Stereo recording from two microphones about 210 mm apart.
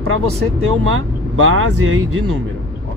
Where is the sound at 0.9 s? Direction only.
90° right.